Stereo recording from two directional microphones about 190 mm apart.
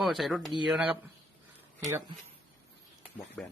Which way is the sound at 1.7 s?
15° right (ahead or behind).